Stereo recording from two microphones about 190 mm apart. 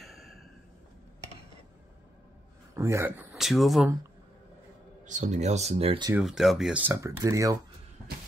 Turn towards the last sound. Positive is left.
turn(degrees=-15)  # may be behind; listen again after turning